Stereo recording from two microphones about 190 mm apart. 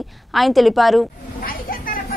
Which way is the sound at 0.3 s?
Centre (ahead or behind).